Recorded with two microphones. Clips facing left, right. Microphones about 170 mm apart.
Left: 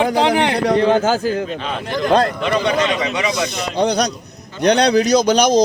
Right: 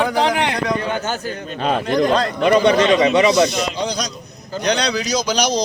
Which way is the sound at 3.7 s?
60° left (ahead or behind).